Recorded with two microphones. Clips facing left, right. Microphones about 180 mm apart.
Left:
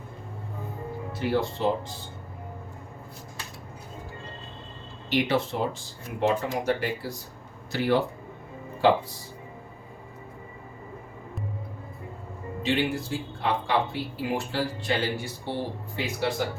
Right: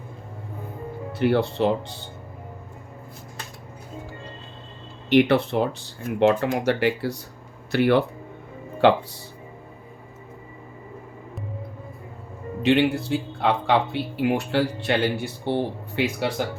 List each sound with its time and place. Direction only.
1.1 s speech: 65° right (ahead or behind)
5.0 s speech: 60° right (ahead or behind)
12.6 s speech: 65° right (ahead or behind)